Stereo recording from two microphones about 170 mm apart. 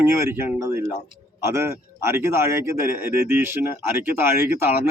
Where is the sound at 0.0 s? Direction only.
15° right (ahead or behind).